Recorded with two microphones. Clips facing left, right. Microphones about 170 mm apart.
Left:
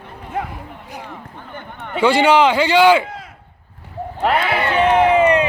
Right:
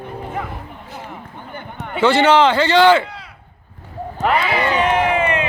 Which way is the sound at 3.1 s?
45° left (ahead or behind).